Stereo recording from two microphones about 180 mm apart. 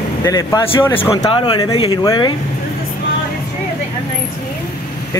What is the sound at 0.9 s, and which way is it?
Speech, 30° left (ahead or behind).